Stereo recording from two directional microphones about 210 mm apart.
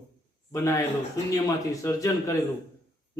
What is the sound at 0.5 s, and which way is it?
A man's voice, 15° left (ahead or behind).